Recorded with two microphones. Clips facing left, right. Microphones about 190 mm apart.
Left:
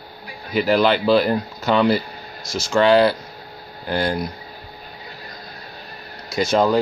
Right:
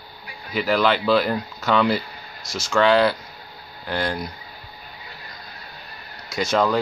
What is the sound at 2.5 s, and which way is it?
Speech, 30° left (ahead or behind).